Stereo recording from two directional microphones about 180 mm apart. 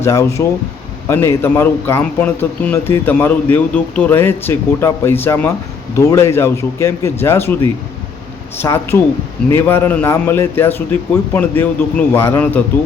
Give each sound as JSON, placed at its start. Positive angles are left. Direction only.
{"t": 0.0, "sound": "a man's voice", "side_deg": 15}
{"t": 8.5, "sound": "a man's voice", "side_deg": 15}